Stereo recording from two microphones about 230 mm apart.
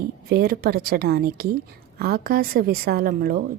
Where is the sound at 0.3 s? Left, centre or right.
Right.